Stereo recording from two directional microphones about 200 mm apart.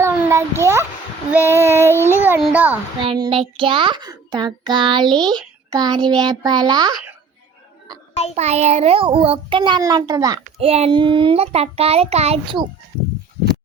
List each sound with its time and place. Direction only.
0.0 s a sound: 15° right (ahead or behind)
1.3 s child singing: 10° right (ahead or behind)
2.0 s a child's voice: 10° right (ahead or behind)
3.0 s child singing: 25° right (ahead or behind)
8.4 s child singing: 35° right (ahead or behind)
10.7 s child singing: 30° right (ahead or behind)